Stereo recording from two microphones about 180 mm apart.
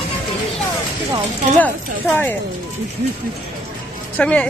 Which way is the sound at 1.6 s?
10° left (ahead or behind).